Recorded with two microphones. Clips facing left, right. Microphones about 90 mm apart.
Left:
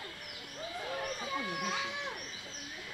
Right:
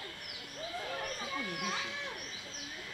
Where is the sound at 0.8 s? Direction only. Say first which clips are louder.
Left 3 dB; 10° left (ahead or behind).